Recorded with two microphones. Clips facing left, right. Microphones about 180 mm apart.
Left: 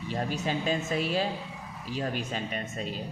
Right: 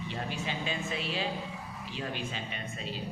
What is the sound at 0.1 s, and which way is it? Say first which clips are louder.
Speech: left 8 dB; 40° left (ahead or behind).